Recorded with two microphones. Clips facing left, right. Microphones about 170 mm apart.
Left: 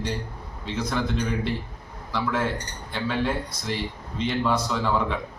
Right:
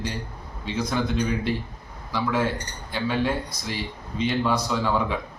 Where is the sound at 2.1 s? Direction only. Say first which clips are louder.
Right 1 dB; 5° right (ahead or behind).